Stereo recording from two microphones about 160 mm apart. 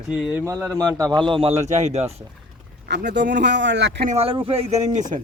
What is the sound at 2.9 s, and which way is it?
Speech, 90° right.